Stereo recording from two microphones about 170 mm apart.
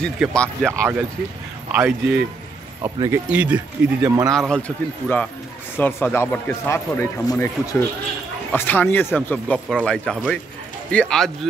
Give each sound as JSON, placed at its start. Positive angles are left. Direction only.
{"t": 0.0, "sound": "speech", "side_deg": 5}
{"t": 0.7, "sound": "a man's voice", "side_deg": -15}
{"t": 2.8, "sound": "speech", "side_deg": -20}
{"t": 3.3, "sound": "a man's voice", "side_deg": -10}
{"t": 4.4, "sound": "speech", "side_deg": 5}